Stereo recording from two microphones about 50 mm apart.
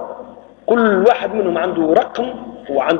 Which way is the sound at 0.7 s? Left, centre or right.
Centre.